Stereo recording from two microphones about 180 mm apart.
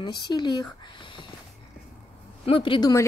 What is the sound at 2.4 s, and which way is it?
Speech, 30° left (ahead or behind).